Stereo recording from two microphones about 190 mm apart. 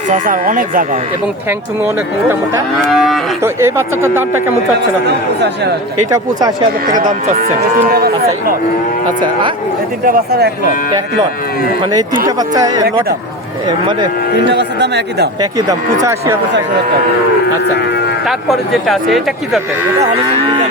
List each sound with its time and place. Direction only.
0.1 s speech: 45° right (ahead or behind)
2.8 s speech: centre (ahead or behind)
3.4 s speech: 15° right (ahead or behind)
5.0 s a man's voice: 65° right (ahead or behind)
6.1 s speech: 20° right (ahead or behind)
6.8 s speech: 45° right (ahead or behind)
7.8 s speech: 55° right (ahead or behind)
10.1 s speech: 55° right (ahead or behind)
11.8 s speech: 20° right (ahead or behind)
14.5 s a man's voice: 65° right (ahead or behind)
15.4 s speech: 20° right (ahead or behind)
17.7 s speech: 60° left (ahead or behind)
18.3 s speech: centre (ahead or behind)